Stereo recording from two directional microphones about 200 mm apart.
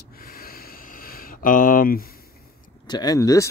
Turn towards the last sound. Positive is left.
turn(degrees=15)  # may be behind; listen again after turning